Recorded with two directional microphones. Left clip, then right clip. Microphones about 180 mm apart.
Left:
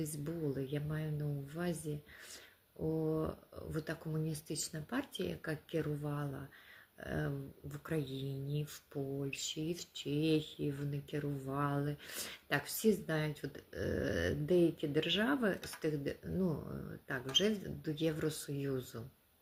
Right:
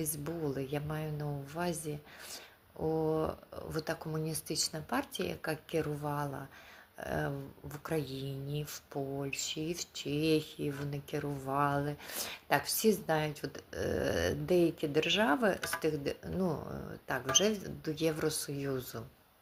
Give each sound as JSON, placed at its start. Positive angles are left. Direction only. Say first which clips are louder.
{"t": 0.0, "sound": "speech", "louder": "right 3 dB", "side_deg": 20}
{"t": 3.2, "sound": "speech", "louder": "right 5 dB", "side_deg": 20}